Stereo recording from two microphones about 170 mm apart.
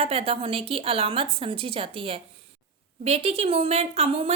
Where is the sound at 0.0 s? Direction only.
35° right (ahead or behind).